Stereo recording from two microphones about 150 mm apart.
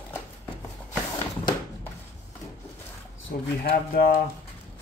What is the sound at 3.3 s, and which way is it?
Speech, 90° left.